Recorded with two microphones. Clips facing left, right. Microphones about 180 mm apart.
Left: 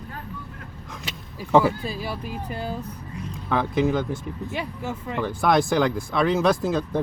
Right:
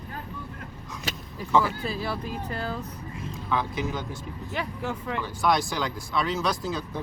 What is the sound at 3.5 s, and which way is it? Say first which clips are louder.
Speech: left 7 dB; 55° left (ahead or behind).